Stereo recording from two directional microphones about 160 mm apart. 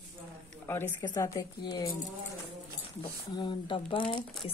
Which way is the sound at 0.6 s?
15° left (ahead or behind).